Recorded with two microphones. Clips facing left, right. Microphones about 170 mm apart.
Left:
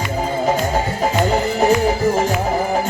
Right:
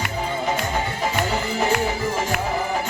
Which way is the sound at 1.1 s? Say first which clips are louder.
Left 7 dB; 40° left (ahead or behind).